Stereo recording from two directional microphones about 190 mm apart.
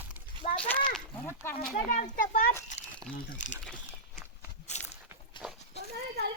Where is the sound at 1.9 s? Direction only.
45° left (ahead or behind).